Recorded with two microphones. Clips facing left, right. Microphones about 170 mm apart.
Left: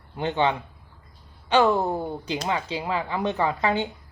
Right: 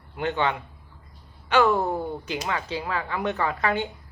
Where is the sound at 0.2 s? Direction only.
25° left (ahead or behind).